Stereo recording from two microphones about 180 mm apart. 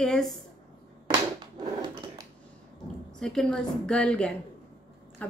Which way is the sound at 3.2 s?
5° left (ahead or behind).